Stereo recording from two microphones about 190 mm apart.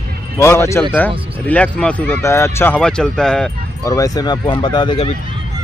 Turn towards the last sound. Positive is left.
turn(degrees=25)  # may be behind; listen again after turning